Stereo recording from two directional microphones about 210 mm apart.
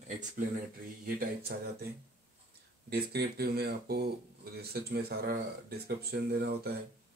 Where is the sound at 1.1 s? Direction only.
45° right (ahead or behind).